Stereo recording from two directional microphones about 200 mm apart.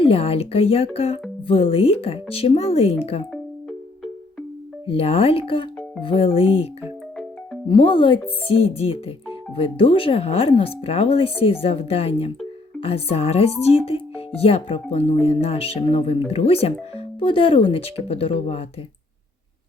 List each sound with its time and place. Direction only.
0.0 s speech: 30° left (ahead or behind)
4.9 s speech: 30° left (ahead or behind)
7.7 s speech: 25° left (ahead or behind)